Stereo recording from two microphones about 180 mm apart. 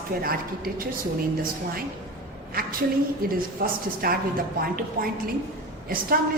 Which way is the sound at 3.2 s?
55° right (ahead or behind).